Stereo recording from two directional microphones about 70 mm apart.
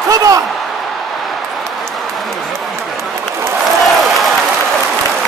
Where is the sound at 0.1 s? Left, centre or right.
Right.